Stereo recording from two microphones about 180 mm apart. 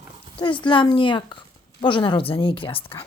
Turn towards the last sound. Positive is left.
turn(degrees=30)  # may be behind; listen again after turning